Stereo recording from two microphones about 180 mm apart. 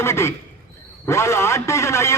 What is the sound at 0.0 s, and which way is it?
A man's voice, 15° left (ahead or behind).